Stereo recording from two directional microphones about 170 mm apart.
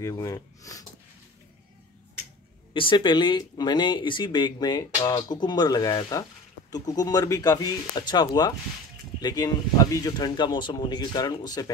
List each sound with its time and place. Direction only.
0.0 s speech: 20° left (ahead or behind)
2.7 s speech: 30° left (ahead or behind)